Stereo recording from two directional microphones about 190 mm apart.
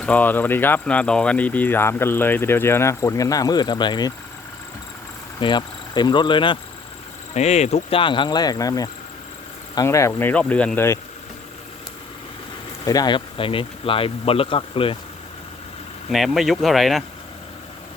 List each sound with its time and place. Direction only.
0.0 s speech: 10° left (ahead or behind)
5.4 s speech: 25° left (ahead or behind)
7.3 s speech: 35° left (ahead or behind); by 11.0 s 15° left (ahead or behind)
12.8 s speech: 20° left (ahead or behind)
16.0 s speech: centre (ahead or behind)